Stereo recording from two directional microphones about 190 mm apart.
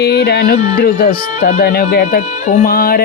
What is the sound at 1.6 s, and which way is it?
Speech, 55° left (ahead or behind).